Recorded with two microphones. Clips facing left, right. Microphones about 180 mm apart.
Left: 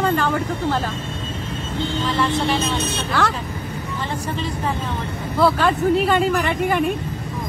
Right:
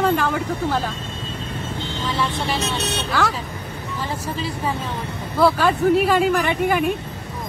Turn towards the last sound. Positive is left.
turn(degrees=0)  # may be behind; listen again after turning